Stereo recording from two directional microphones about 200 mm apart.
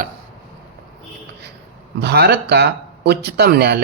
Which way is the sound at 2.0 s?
55° right (ahead or behind).